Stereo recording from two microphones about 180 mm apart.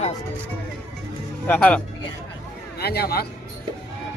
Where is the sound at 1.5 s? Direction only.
10° left (ahead or behind).